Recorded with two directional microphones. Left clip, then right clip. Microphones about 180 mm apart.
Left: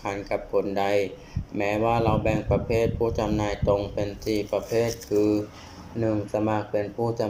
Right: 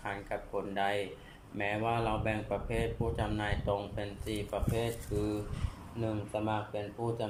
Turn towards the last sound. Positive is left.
turn(degrees=30)  # may be behind; listen again after turning